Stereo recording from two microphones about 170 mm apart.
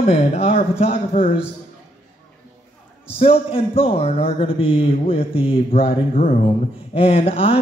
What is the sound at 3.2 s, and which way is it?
Speech, 35° left (ahead or behind).